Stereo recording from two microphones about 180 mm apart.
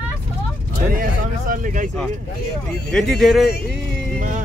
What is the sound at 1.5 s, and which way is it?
Speech, 45° right (ahead or behind).